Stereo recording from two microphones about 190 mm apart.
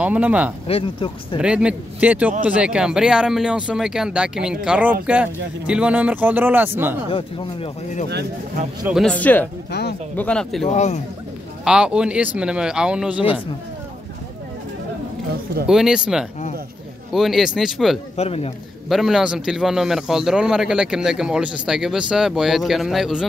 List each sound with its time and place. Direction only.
0.0 s speech: 10° right (ahead or behind)
0.7 s speech: 30° left (ahead or behind)
1.4 s speech: 5° right (ahead or behind)
7.1 s speech: 30° left (ahead or behind)
8.8 s speech: 5° right (ahead or behind)
9.1 s speech: 10° left (ahead or behind)
9.7 s speech: 60° left (ahead or behind)
10.1 s speech: 5° left (ahead or behind)
10.7 s speech: 35° left (ahead or behind)
11.6 s speech: 5° right (ahead or behind)
15.6 s speech: 5° right (ahead or behind)
18.1 s speech: 30° left (ahead or behind)
18.9 s speech: centre (ahead or behind)